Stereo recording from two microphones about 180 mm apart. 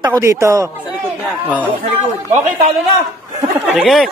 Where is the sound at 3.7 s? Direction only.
Centre (ahead or behind).